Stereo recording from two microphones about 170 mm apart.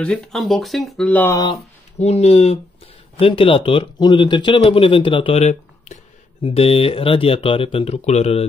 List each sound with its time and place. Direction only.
0.0 s speech: 5° left (ahead or behind)
1.5 s speech: 40° left (ahead or behind)